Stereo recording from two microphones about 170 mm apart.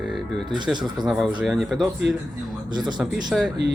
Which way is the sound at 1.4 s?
Centre (ahead or behind).